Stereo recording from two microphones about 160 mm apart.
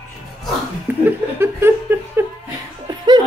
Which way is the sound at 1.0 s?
15° right (ahead or behind).